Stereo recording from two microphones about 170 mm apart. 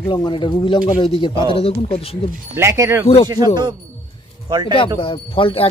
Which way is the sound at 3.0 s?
35° left (ahead or behind).